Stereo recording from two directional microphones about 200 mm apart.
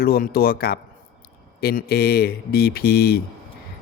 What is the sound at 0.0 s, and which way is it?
Speech, 50° left (ahead or behind).